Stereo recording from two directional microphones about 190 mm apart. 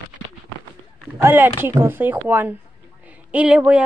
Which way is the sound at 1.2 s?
10° right (ahead or behind).